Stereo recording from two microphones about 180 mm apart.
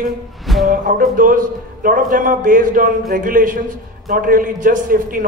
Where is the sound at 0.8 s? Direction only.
50° right (ahead or behind).